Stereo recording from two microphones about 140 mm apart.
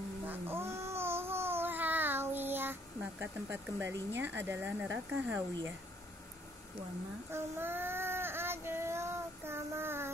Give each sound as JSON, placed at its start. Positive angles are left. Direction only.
{"t": 0.3, "sound": "babbling", "side_deg": -15}
{"t": 7.3, "sound": "child singing", "side_deg": -15}